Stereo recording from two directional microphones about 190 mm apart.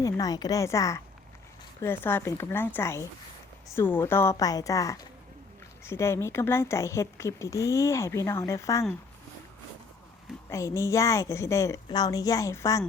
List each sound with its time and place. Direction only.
0.0 s speech: 20° left (ahead or behind)
10.5 s speech: 15° left (ahead or behind)